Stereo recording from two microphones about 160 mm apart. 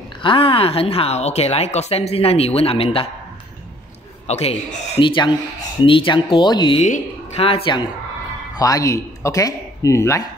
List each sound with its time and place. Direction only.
0.2 s a woman's voice: 35° left (ahead or behind)
4.3 s a woman's voice: 40° left (ahead or behind)
6.8 s a woman's voice: 40° left (ahead or behind); by 10.2 s 20° left (ahead or behind)